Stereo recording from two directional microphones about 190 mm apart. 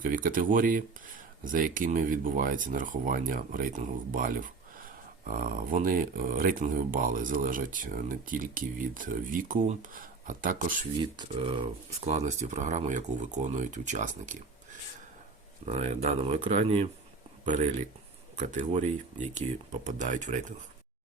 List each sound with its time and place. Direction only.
0.0 s speech: 45° right (ahead or behind)
11.0 s speech: 25° right (ahead or behind)
15.6 s speech: 35° right (ahead or behind)